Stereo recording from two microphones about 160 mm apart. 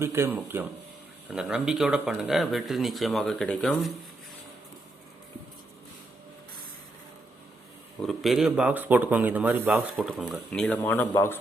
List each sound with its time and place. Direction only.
0.0 s speech: 15° right (ahead or behind); by 3.9 s 5° left (ahead or behind)
8.0 s speech: centre (ahead or behind)
10.5 s speech: 5° left (ahead or behind)